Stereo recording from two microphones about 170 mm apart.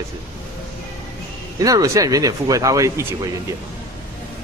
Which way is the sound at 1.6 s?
20° right (ahead or behind).